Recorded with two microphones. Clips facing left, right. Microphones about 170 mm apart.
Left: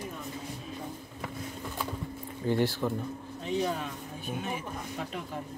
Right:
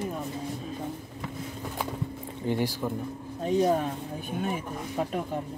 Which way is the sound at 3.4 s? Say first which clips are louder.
Right 7 dB; 40° right (ahead or behind).